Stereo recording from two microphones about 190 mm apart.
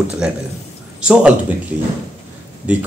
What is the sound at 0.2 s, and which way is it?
Speech, 5° right (ahead or behind).